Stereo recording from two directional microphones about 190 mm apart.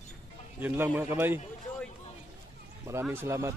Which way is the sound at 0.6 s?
10° right (ahead or behind).